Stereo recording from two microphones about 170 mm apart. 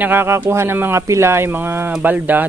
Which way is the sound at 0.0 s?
10° right (ahead or behind).